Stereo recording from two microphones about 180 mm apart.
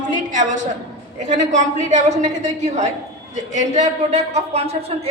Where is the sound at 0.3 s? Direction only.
45° right (ahead or behind).